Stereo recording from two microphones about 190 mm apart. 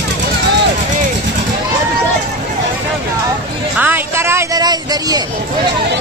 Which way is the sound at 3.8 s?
10° right (ahead or behind).